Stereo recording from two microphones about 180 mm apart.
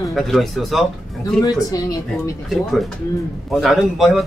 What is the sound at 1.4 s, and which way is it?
Speech, 20° left (ahead or behind).